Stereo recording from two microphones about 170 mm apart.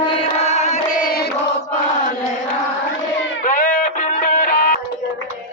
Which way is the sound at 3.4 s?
50° left (ahead or behind).